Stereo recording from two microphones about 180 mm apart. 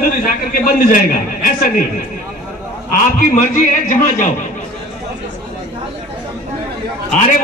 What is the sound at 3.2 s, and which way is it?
A man's voice, 45° left (ahead or behind).